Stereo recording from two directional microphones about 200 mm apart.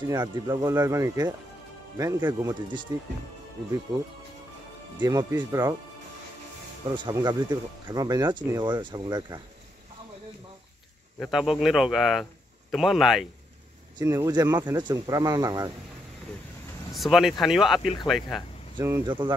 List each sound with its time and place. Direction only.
0.1 s speech: 20° right (ahead or behind)
5.0 s speech: 20° right (ahead or behind)
6.9 s speech: 25° right (ahead or behind)
11.1 s speech: centre (ahead or behind)
13.9 s speech: 15° right (ahead or behind)
16.9 s speech: centre (ahead or behind)
18.8 s speech: 15° right (ahead or behind)